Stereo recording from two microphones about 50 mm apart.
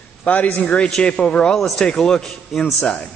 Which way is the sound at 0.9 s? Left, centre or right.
Centre.